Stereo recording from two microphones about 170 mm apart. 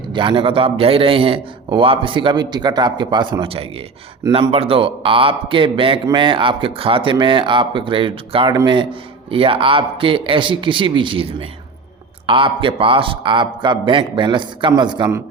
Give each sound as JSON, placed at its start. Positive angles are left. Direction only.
{"t": 0.1, "sound": "a man's voice", "side_deg": -30}